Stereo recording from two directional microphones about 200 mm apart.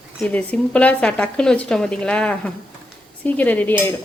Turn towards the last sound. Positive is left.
turn(degrees=10)  # may be behind; listen again after turning